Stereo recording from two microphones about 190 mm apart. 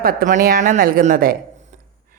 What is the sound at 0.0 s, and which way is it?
Speech, 50° right (ahead or behind).